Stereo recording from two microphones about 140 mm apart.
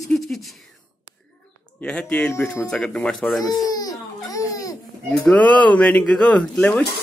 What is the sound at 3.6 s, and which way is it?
Baby cry, 25° left (ahead or behind).